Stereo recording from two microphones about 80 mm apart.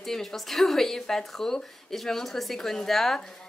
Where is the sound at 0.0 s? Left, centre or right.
Centre.